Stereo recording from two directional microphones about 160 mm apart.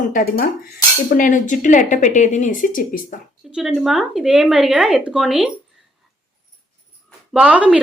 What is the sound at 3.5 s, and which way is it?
Speech, centre (ahead or behind).